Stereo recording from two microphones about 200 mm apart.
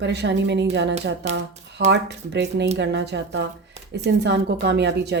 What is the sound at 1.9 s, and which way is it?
Speech, 60° right (ahead or behind).